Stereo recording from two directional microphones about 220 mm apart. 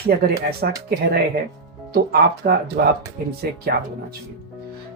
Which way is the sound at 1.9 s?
45° right (ahead or behind).